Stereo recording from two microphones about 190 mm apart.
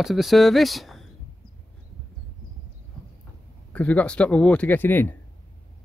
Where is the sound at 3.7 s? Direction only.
5° left (ahead or behind).